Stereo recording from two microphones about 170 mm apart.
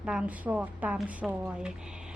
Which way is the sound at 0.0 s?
5° right (ahead or behind).